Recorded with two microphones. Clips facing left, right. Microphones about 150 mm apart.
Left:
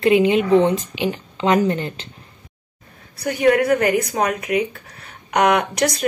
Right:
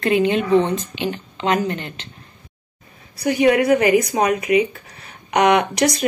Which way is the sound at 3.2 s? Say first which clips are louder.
Right 1 dB; 5° right (ahead or behind).